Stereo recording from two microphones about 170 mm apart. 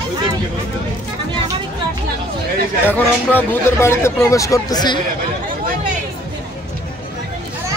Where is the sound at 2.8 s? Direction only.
10° left (ahead or behind).